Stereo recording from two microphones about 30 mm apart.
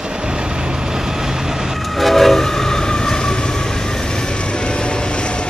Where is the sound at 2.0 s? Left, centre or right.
Centre; by 3.3 s left.